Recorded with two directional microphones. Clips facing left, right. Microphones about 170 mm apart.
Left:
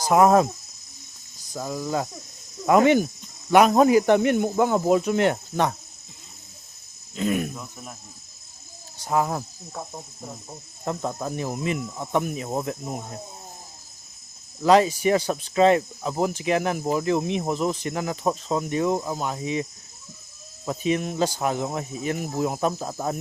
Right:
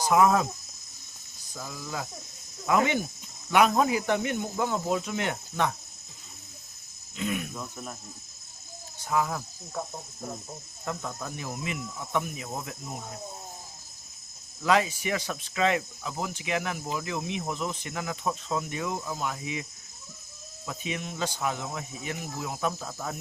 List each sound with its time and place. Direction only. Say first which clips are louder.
0.1 s speech: left 6 dB; 45° left (ahead or behind)
1.5 s speech: left 9 dB; 40° left (ahead or behind)
7.2 s speech: left 7 dB; 45° left (ahead or behind)
9.0 s speech: left 4 dB; 35° left (ahead or behind)
10.8 s speech: left 7 dB; 30° left (ahead or behind)
14.6 s speech: left 7 dB; 35° left (ahead or behind)
20.7 s speech: left 10 dB; 35° left (ahead or behind)